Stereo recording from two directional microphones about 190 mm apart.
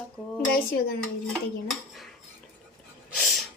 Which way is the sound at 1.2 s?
Centre (ahead or behind).